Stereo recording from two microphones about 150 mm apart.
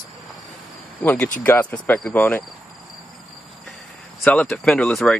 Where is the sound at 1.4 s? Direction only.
10° left (ahead or behind).